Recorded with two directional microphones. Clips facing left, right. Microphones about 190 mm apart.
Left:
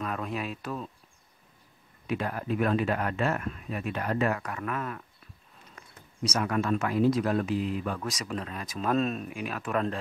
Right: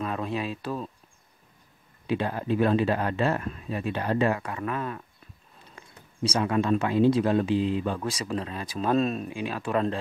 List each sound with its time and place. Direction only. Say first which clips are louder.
0.0 s speech: right 3 dB; 30° right (ahead or behind)
2.0 s speech: right 4 dB; 25° right (ahead or behind)